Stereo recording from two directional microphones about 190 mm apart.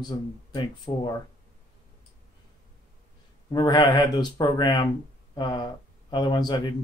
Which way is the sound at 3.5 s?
20° left (ahead or behind).